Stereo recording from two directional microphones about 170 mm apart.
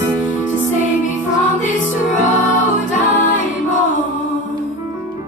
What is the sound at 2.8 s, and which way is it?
Music, 50° left (ahead or behind).